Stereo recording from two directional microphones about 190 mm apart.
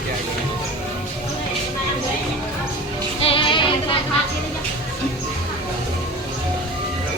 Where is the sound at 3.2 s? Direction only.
30° left (ahead or behind).